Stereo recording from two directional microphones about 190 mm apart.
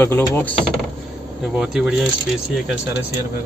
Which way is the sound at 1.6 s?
5° right (ahead or behind).